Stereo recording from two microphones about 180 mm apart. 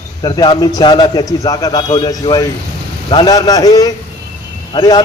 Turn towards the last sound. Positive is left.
turn(degrees=20)  # may be behind; listen again after turning